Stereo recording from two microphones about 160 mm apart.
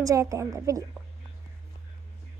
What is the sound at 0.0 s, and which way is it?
Speech, 20° right (ahead or behind).